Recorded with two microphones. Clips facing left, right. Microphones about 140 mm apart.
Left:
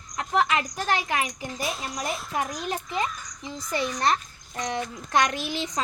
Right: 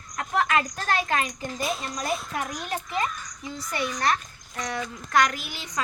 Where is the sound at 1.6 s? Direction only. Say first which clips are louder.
Right 1 dB; centre (ahead or behind).